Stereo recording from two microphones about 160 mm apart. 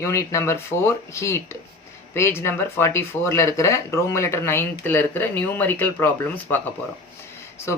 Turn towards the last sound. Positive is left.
turn(degrees=15)  # may be behind; listen again after turning